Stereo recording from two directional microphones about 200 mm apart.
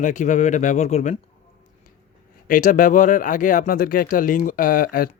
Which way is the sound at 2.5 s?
40° left (ahead or behind).